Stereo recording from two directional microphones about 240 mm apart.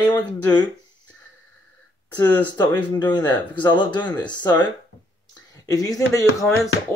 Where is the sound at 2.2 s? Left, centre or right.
Centre.